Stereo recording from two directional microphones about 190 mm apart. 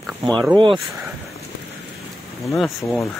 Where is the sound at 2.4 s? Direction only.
Centre (ahead or behind).